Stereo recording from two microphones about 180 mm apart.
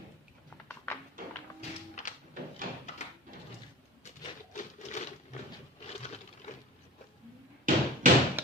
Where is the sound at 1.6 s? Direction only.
40° left (ahead or behind).